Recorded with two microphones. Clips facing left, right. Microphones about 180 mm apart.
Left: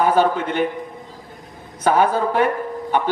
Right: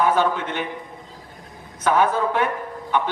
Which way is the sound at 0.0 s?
35° left (ahead or behind).